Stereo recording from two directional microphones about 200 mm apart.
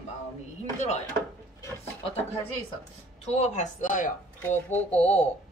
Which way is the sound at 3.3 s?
35° left (ahead or behind).